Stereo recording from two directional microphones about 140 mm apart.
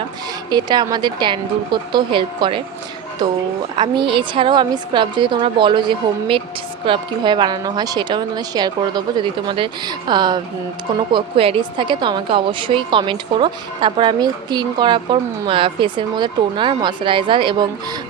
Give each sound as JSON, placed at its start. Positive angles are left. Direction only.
{"t": 0.5, "sound": "a woman's voice", "side_deg": -30}
{"t": 3.8, "sound": "a woman's voice", "side_deg": -35}